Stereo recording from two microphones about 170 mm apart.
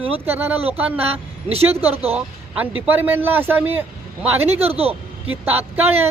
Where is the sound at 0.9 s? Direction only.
35° right (ahead or behind).